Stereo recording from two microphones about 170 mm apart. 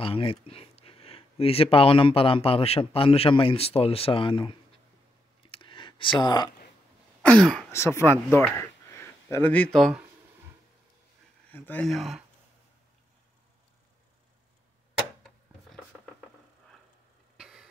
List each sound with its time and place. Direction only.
0.0 s speech: 30° left (ahead or behind)
5.5 s a sound: 30° left (ahead or behind)
7.2 s speech: 5° left (ahead or behind)
7.7 s speech: 15° left (ahead or behind); by 10.0 s centre (ahead or behind)
11.5 s speech: 10° left (ahead or behind)
17.4 s a sound: 5° right (ahead or behind)